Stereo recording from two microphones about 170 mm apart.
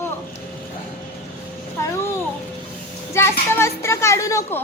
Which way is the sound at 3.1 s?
15° left (ahead or behind).